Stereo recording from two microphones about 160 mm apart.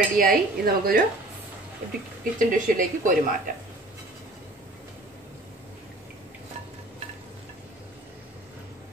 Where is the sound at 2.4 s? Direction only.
55° right (ahead or behind).